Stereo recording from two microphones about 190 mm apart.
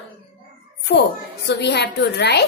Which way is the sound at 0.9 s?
55° left (ahead or behind).